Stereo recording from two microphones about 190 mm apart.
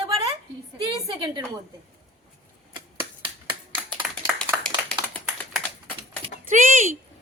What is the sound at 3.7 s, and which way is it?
Clapping, 10° right (ahead or behind).